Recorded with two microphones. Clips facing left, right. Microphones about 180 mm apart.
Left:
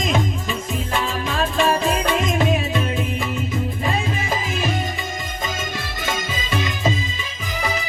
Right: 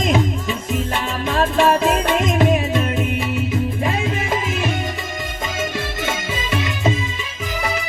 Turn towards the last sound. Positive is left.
turn(degrees=-65)  # may be behind; listen again after turning